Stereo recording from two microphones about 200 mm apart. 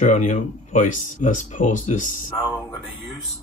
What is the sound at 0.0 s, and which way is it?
Speech, 35° left (ahead or behind).